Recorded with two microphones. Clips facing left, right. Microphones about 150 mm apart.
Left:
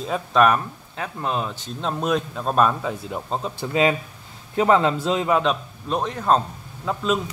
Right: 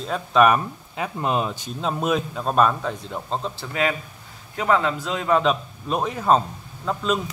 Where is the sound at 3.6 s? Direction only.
25° left (ahead or behind).